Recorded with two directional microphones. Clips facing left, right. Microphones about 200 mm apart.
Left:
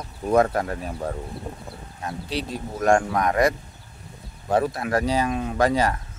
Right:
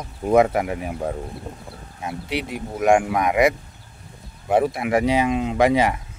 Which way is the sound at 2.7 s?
15° right (ahead or behind).